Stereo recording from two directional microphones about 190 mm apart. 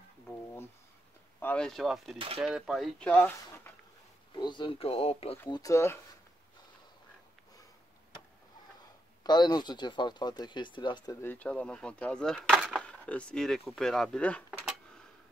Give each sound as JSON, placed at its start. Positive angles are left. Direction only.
{"t": 1.4, "sound": "speech", "side_deg": 5}
{"t": 2.1, "sound": "speech", "side_deg": -30}
{"t": 2.4, "sound": "speech", "side_deg": -5}
{"t": 4.4, "sound": "speech", "side_deg": 25}
{"t": 5.5, "sound": "speech", "side_deg": 15}
{"t": 9.2, "sound": "speech", "side_deg": 20}
{"t": 11.1, "sound": "speech", "side_deg": 10}
{"t": 12.8, "sound": "speech", "side_deg": 5}